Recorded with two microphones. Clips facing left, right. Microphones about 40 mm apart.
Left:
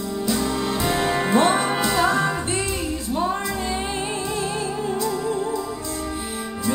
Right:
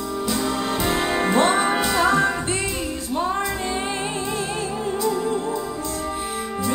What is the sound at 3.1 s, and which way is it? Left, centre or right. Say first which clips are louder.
Music: even; centre.